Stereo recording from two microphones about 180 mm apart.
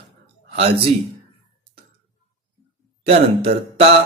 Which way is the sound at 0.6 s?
30° right (ahead or behind).